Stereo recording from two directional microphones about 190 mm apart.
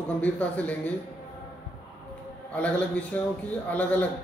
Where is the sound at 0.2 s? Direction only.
10° left (ahead or behind).